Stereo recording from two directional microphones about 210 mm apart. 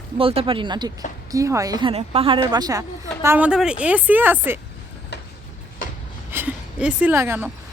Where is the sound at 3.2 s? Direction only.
10° right (ahead or behind).